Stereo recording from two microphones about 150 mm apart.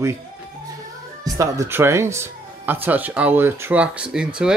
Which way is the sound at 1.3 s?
20° right (ahead or behind).